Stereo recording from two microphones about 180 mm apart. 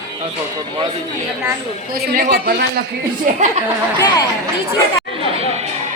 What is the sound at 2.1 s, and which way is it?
Speech, 55° right (ahead or behind).